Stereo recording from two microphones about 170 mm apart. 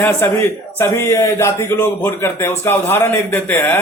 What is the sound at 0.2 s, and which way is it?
A man's voice, 15° left (ahead or behind).